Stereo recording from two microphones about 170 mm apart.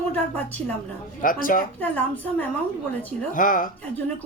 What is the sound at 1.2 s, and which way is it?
Speech, 55° left (ahead or behind).